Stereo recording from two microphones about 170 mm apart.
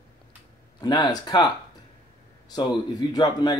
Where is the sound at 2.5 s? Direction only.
25° left (ahead or behind).